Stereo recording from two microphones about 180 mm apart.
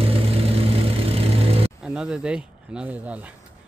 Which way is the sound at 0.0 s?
30° right (ahead or behind).